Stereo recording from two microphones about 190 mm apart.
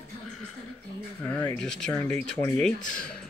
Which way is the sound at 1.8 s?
5° left (ahead or behind).